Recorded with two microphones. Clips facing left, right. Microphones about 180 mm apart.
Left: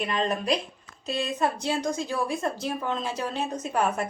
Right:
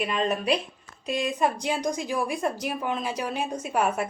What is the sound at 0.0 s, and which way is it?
A woman's voice, 5° right (ahead or behind).